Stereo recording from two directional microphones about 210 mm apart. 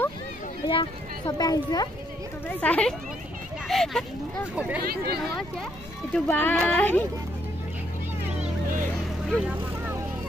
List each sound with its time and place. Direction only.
0.7 s speech: 20° left (ahead or behind)
2.4 s speech: 5° left (ahead or behind)
6.1 s speech: 10° left (ahead or behind)